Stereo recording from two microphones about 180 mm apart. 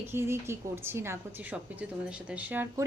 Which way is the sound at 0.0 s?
15° right (ahead or behind).